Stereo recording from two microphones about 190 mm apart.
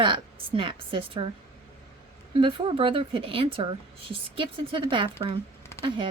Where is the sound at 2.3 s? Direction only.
30° right (ahead or behind).